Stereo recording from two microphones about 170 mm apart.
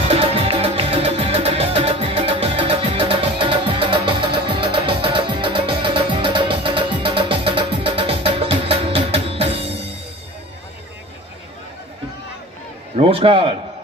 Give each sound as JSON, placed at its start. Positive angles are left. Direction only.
{"t": 0.1, "sound": "music", "side_deg": -35}
{"t": 12.9, "sound": "a man's voice", "side_deg": -35}